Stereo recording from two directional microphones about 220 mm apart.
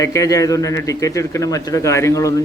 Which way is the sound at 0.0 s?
15° left (ahead or behind).